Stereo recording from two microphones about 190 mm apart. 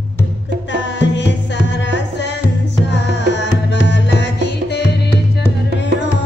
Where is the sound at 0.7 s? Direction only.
70° left (ahead or behind).